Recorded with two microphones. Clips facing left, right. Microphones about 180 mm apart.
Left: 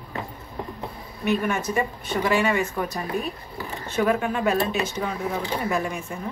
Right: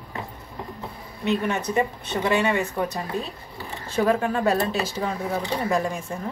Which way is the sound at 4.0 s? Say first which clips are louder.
Right 1 dB; 35° right (ahead or behind).